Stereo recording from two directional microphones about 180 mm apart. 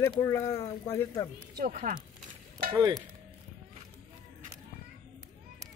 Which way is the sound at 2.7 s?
20° right (ahead or behind).